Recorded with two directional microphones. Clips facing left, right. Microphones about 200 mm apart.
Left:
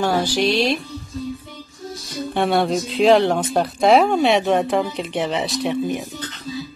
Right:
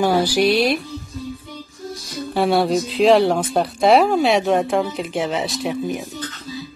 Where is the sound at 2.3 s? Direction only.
Centre (ahead or behind).